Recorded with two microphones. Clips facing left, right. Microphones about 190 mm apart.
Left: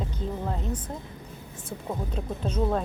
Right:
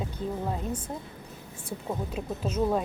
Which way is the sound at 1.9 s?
5° right (ahead or behind).